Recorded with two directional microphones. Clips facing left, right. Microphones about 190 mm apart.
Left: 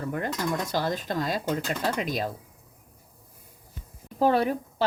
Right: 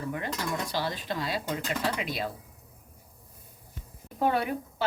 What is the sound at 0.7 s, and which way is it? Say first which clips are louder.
Speech: left 4 dB; 45° left (ahead or behind).